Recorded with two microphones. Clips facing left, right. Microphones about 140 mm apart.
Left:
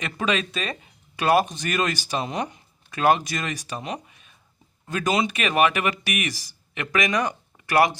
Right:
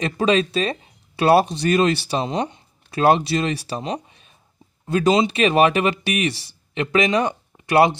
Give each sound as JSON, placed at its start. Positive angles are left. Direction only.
{"t": 0.0, "sound": "speech", "side_deg": -30}